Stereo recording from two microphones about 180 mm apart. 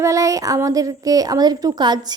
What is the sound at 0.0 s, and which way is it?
A woman's voice, 15° right (ahead or behind).